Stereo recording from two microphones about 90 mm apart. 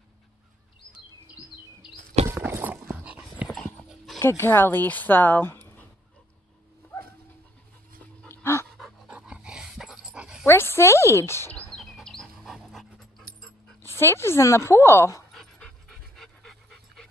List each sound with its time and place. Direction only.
2.2 s clip-clop: 30° right (ahead or behind)
3.4 s clip-clop: 5° left (ahead or behind)
4.2 s speech: 30° left (ahead or behind)
8.3 s pant: 30° left (ahead or behind)
8.7 s pant: 5° right (ahead or behind)
9.2 s dog: 10° right (ahead or behind)
10.4 s a sound: 25° left (ahead or behind)
11.7 s dog: centre (ahead or behind)
13.8 s a woman's voice: 30° left (ahead or behind)
15.3 s dog: 5° left (ahead or behind)